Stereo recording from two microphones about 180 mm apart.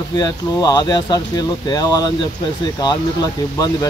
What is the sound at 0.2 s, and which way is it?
Speech, 20° left (ahead or behind).